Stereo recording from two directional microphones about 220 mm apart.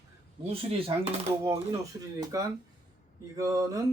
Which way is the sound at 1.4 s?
15° right (ahead or behind).